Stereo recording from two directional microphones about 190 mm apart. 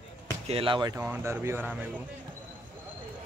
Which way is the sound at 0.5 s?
30° right (ahead or behind).